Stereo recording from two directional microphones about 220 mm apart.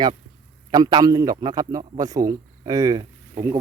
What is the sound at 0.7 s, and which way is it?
Speech, 20° right (ahead or behind).